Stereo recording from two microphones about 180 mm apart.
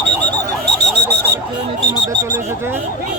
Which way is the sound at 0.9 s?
65° right (ahead or behind).